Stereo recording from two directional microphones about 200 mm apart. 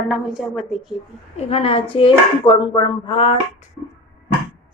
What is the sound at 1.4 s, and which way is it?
Speech, 30° left (ahead or behind).